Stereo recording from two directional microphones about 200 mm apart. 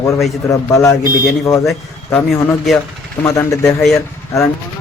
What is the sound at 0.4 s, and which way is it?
A man's voice, 15° left (ahead or behind).